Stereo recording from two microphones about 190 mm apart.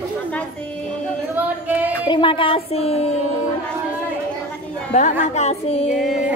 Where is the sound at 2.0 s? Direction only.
25° left (ahead or behind).